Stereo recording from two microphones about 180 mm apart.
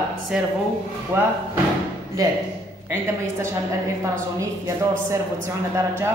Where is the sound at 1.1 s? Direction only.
15° right (ahead or behind).